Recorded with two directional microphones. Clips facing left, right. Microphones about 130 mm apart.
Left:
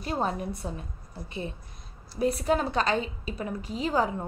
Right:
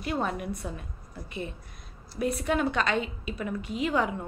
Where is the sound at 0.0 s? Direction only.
35° left (ahead or behind).